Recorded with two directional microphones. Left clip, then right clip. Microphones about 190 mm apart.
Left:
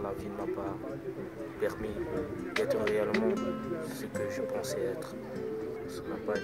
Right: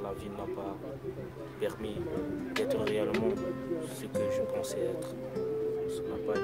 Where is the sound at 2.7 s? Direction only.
5° right (ahead or behind).